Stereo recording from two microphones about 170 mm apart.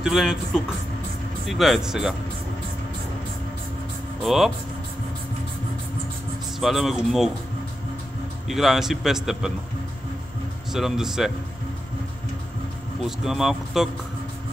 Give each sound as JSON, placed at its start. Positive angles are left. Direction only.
{"t": 0.0, "sound": "a man's voice", "side_deg": -5}
{"t": 4.2, "sound": "speech", "side_deg": 0}
{"t": 6.6, "sound": "a man's voice", "side_deg": 0}
{"t": 8.5, "sound": "a man's voice", "side_deg": 0}
{"t": 10.7, "sound": "a man's voice", "side_deg": -5}
{"t": 13.0, "sound": "a man's voice", "side_deg": 0}